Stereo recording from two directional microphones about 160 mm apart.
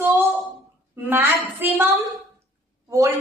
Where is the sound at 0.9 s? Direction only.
15° right (ahead or behind).